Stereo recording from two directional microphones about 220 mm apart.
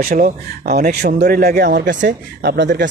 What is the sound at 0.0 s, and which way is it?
Speech, 40° right (ahead or behind).